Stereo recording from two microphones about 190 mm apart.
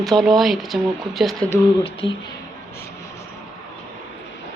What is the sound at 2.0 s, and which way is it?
Speech, 30° left (ahead or behind).